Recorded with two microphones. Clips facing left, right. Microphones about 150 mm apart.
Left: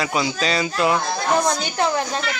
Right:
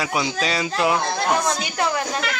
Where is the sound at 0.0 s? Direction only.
5° right (ahead or behind).